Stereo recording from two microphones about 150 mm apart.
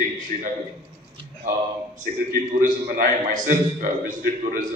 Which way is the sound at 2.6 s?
60° right (ahead or behind).